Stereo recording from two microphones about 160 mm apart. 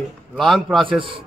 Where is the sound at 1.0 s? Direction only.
35° right (ahead or behind).